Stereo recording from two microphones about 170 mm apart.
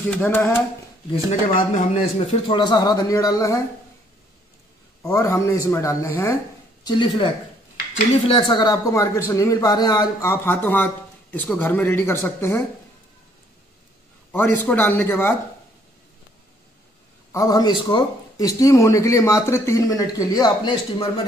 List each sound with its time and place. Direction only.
0.0 s a man's voice: 10° left (ahead or behind)
1.6 s a man's voice: 45° left (ahead or behind); by 3.6 s 20° left (ahead or behind)
5.0 s a man's voice: 15° left (ahead or behind)
14.3 s a man's voice: 10° left (ahead or behind)
17.3 s a man's voice: 20° left (ahead or behind)